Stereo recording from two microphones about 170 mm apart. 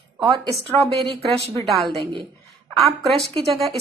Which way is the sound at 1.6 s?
Centre (ahead or behind).